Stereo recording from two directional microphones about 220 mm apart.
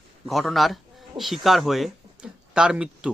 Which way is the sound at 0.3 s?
Centre (ahead or behind).